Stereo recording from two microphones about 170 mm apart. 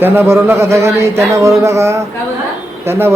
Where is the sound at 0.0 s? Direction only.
10° right (ahead or behind).